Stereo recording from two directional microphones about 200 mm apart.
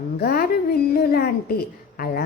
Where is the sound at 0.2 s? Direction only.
45° left (ahead or behind).